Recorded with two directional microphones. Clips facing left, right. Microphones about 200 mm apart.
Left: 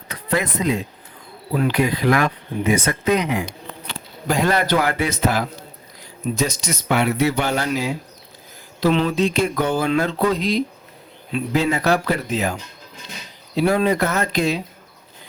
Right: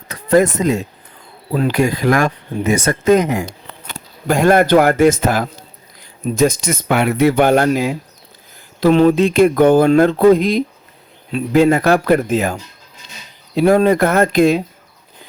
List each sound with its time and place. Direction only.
0.1 s speech: 45° right (ahead or behind)
13.6 s speech: 50° right (ahead or behind)